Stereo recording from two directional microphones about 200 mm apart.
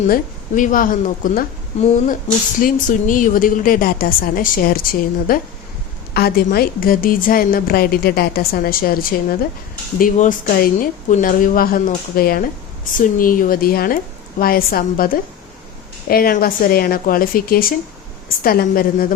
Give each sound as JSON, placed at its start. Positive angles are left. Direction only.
{"t": 0.1, "sound": "a woman's voice", "side_deg": 40}